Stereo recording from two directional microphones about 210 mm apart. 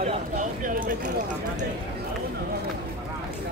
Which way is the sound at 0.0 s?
40° right (ahead or behind).